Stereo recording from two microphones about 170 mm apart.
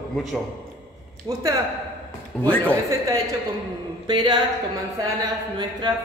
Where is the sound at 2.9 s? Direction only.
20° right (ahead or behind).